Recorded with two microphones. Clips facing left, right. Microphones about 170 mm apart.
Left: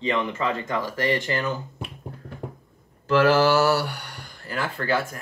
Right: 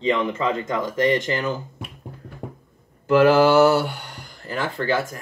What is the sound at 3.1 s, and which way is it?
Speech, 20° right (ahead or behind).